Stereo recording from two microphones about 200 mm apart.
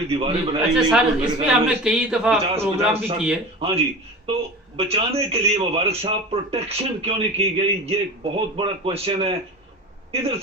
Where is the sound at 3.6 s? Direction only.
25° right (ahead or behind).